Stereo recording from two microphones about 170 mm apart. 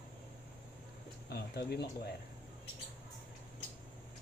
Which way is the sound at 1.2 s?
70° left (ahead or behind).